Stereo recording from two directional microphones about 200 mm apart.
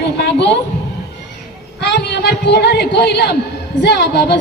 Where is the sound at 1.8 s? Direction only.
60° left (ahead or behind).